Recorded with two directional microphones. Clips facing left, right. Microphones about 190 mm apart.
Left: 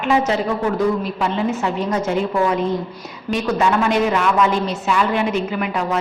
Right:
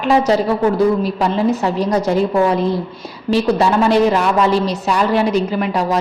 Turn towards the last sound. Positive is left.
turn(degrees=-35)  # may be behind; listen again after turning